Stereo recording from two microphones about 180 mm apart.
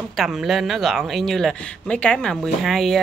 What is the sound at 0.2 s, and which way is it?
Speech, centre (ahead or behind).